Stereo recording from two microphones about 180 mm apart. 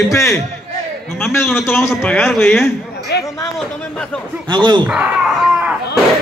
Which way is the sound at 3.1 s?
65° left (ahead or behind).